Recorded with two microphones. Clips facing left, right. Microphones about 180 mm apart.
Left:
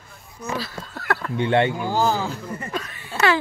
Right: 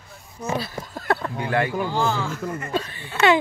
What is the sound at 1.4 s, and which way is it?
Speech, 25° left (ahead or behind).